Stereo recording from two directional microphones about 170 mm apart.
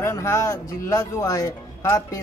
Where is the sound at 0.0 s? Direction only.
15° left (ahead or behind).